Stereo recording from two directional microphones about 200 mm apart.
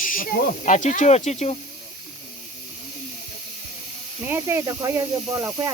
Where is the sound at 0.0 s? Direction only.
45° left (ahead or behind).